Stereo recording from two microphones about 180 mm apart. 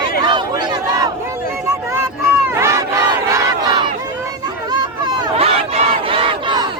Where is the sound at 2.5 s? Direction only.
15° right (ahead or behind).